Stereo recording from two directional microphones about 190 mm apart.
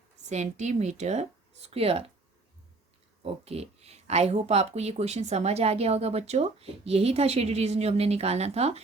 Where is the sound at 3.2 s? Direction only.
35° right (ahead or behind).